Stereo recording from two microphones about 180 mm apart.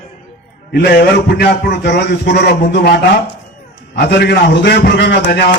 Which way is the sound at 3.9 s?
65° left (ahead or behind).